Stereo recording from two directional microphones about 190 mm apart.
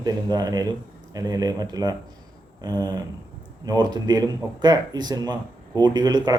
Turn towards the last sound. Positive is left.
turn(degrees=-20)  # may be behind; listen again after turning